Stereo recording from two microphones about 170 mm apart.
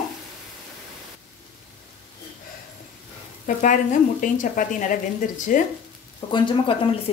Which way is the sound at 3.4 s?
50° left (ahead or behind).